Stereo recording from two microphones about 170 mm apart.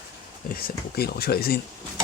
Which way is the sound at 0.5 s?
65° left (ahead or behind).